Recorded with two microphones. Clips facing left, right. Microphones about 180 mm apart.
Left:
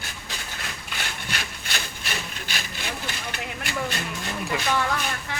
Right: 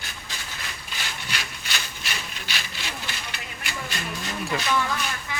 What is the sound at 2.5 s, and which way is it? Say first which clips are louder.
Sawing: left 2 dB; 50° left (ahead or behind).